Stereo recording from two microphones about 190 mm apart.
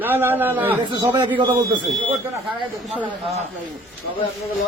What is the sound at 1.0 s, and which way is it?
Speech, 10° right (ahead or behind).